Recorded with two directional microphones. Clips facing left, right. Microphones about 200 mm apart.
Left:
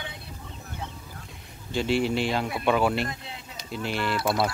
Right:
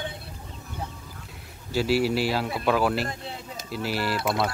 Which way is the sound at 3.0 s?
30° right (ahead or behind).